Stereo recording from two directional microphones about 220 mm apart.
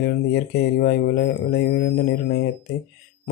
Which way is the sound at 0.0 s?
45° left (ahead or behind).